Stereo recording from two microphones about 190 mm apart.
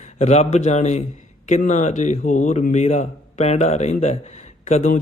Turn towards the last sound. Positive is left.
turn(degrees=35)  # may be behind; listen again after turning